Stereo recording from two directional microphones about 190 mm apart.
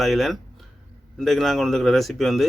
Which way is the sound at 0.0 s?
Centre (ahead or behind).